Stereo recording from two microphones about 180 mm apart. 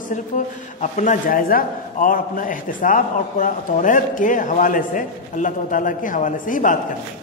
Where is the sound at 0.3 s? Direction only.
45° left (ahead or behind).